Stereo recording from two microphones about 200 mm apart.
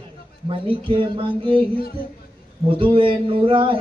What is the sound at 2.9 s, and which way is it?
Speech, 25° right (ahead or behind).